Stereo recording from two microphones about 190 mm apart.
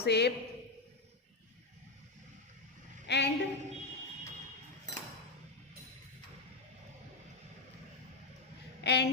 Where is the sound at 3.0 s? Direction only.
65° left (ahead or behind).